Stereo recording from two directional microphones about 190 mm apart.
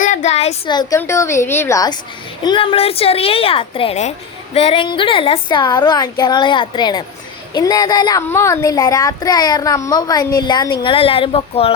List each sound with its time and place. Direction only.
0.0 s a child's voice: 40° left (ahead or behind)